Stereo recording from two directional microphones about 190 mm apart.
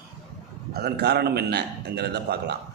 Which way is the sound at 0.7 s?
55° right (ahead or behind).